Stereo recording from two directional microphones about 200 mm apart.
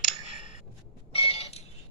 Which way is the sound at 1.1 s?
30° left (ahead or behind).